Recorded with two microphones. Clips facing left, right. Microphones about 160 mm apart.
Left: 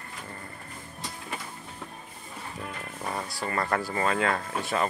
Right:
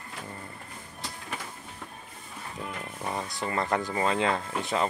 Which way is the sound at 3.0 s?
Centre (ahead or behind).